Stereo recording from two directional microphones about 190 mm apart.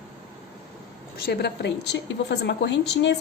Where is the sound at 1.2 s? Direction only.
60° left (ahead or behind).